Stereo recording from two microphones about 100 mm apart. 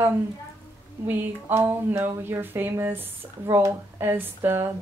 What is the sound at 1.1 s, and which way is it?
Speech, 20° right (ahead or behind).